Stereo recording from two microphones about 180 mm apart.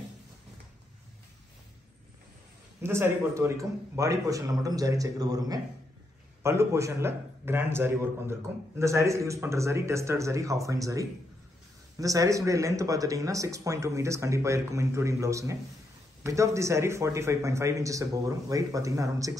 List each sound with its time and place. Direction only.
2.8 s a man's voice: 15° right (ahead or behind)